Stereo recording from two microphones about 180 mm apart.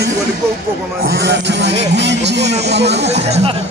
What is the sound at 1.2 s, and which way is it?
Speech, 75° right (ahead or behind).